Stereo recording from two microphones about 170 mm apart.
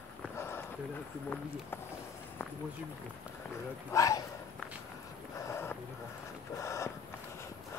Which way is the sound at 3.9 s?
20° left (ahead or behind).